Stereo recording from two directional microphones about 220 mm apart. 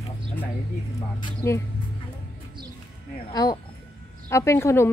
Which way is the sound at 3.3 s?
15° left (ahead or behind).